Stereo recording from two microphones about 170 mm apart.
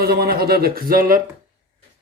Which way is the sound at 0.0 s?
65° right (ahead or behind).